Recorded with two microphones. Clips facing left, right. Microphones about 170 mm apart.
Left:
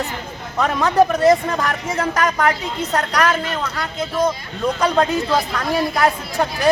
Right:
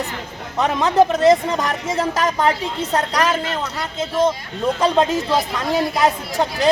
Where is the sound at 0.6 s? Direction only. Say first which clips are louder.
Even; 20° right (ahead or behind).